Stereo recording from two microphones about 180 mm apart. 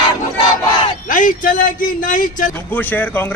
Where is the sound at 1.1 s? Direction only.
45° left (ahead or behind).